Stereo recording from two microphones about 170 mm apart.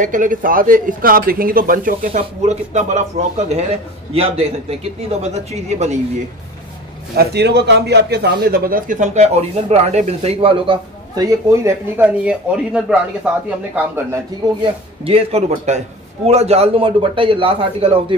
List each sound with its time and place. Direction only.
0.0 s a man's voice: 50° right (ahead or behind)
7.2 s a man's voice: 75° right (ahead or behind); by 11.7 s 20° right (ahead or behind)
12.0 s speech: 5° right (ahead or behind)
14.6 s a man's voice: 35° right (ahead or behind)